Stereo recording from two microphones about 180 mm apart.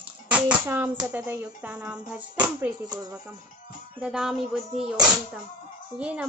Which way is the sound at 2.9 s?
20° right (ahead or behind).